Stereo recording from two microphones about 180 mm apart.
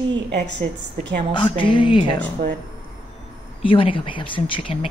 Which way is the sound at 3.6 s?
30° left (ahead or behind).